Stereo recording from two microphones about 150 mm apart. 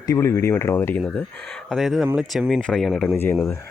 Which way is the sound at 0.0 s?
20° left (ahead or behind).